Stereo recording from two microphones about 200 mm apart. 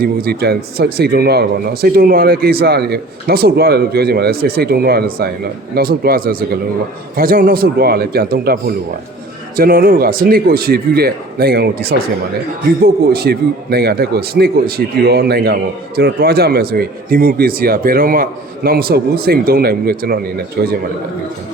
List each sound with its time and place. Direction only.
0.0 s speech: 50° right (ahead or behind)